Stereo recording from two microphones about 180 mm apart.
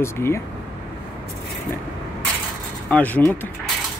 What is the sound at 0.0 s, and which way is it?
Speech, 15° left (ahead or behind).